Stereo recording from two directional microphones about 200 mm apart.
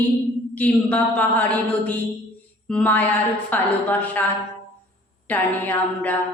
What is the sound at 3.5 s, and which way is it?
Speech, 10° left (ahead or behind).